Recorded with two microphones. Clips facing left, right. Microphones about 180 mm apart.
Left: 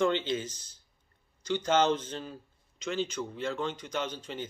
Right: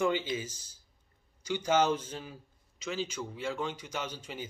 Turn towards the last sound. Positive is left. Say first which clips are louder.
# left 4 dB
turn(degrees=-10)  # may be behind; listen again after turning